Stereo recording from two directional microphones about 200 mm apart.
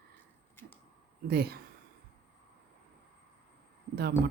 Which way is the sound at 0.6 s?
10° left (ahead or behind).